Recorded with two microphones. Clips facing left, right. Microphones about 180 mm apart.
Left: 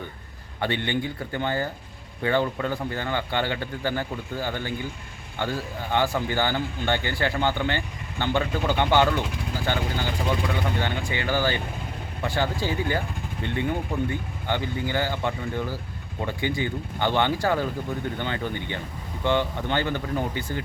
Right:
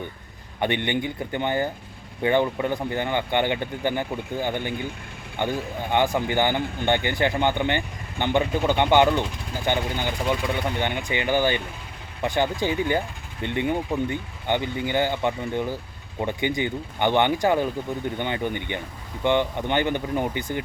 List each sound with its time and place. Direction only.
0.6 s speech: 20° right (ahead or behind)